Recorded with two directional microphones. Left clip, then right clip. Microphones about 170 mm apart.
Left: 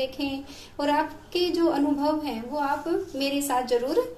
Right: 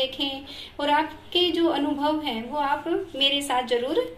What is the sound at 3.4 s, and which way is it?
Speech, 5° right (ahead or behind).